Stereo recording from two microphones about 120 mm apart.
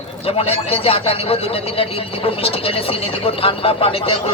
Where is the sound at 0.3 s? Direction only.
55° left (ahead or behind).